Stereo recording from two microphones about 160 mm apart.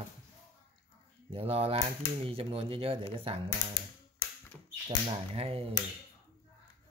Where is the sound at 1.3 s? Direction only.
35° right (ahead or behind).